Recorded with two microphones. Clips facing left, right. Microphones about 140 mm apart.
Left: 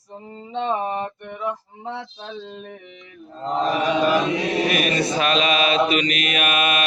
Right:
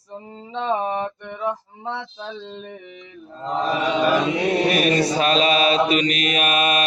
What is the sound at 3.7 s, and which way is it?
Chant, 25° right (ahead or behind).